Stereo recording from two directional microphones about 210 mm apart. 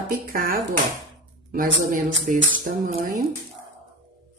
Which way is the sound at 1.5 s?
40° right (ahead or behind).